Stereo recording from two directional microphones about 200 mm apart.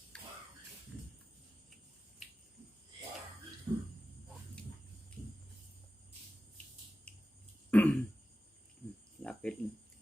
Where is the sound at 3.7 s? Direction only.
15° right (ahead or behind).